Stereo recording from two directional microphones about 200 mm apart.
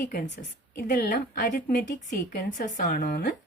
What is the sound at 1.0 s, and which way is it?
A woman's voice, 55° left (ahead or behind).